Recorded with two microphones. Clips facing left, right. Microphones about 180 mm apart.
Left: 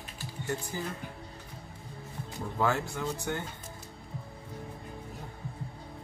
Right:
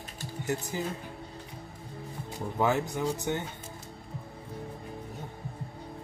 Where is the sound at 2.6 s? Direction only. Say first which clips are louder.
Right 3 dB; 20° right (ahead or behind).